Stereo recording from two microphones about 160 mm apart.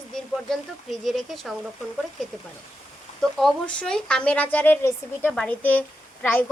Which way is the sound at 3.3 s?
5° left (ahead or behind).